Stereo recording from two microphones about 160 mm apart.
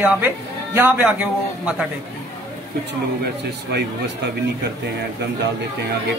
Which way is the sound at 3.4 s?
90° right.